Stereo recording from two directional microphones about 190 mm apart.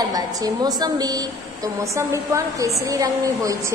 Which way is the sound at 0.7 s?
20° right (ahead or behind).